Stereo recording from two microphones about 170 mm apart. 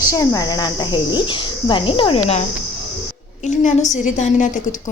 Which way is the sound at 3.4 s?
45° left (ahead or behind).